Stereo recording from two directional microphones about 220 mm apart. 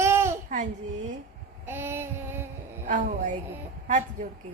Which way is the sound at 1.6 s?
10° right (ahead or behind).